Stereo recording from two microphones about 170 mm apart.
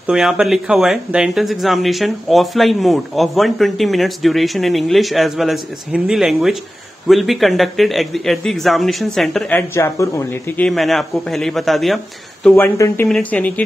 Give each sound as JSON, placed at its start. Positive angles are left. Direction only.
{"t": 0.0, "sound": "speech", "side_deg": -5}
{"t": 9.6, "sound": "speech", "side_deg": 15}
{"t": 10.6, "sound": "speech", "side_deg": 0}
{"t": 12.4, "sound": "speech", "side_deg": 10}